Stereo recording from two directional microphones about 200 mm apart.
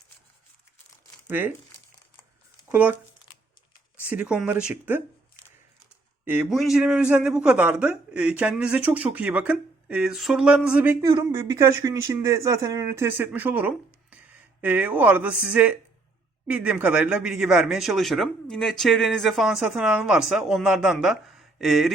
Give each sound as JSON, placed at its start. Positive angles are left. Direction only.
{"t": 1.3, "sound": "speech", "side_deg": -10}
{"t": 2.6, "sound": "speech", "side_deg": -5}
{"t": 4.0, "sound": "speech", "side_deg": -5}
{"t": 6.2, "sound": "speech", "side_deg": -5}